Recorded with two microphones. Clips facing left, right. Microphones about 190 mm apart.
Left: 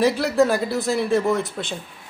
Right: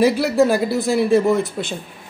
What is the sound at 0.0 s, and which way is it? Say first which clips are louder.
Speech: right 3 dB; 5° right (ahead or behind).